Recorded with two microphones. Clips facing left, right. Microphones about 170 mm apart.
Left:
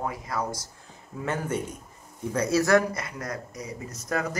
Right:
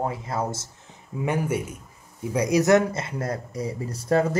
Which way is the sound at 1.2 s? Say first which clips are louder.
Right 3 dB; 10° right (ahead or behind).